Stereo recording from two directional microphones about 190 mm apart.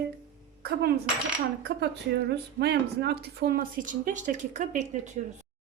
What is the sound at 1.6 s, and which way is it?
Speech, 60° right (ahead or behind).